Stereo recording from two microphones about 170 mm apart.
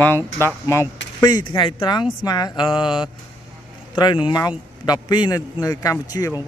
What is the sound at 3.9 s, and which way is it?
Speech, 25° left (ahead or behind).